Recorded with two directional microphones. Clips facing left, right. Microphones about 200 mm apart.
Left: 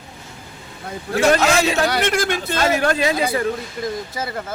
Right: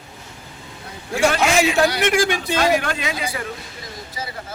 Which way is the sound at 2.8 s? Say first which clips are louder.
Left 7 dB; 40° left (ahead or behind).